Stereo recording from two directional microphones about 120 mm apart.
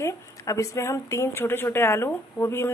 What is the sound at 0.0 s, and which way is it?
Speech, 25° left (ahead or behind).